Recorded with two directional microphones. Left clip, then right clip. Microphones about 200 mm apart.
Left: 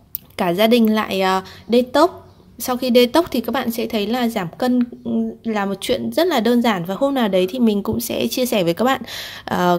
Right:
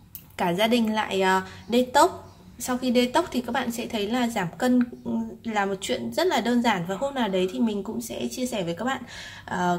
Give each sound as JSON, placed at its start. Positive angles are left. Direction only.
{"t": 0.4, "sound": "a woman's voice", "side_deg": 35}